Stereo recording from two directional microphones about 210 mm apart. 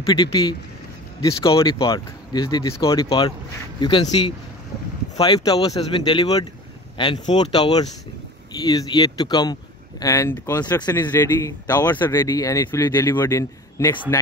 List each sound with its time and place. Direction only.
0.0 s speech: 20° left (ahead or behind)
5.1 s speech: 20° left (ahead or behind)